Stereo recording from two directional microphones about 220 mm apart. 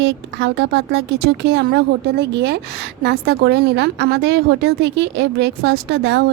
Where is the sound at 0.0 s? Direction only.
55° right (ahead or behind).